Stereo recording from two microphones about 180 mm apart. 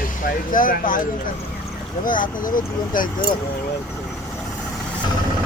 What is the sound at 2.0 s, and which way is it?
Speech, 50° left (ahead or behind).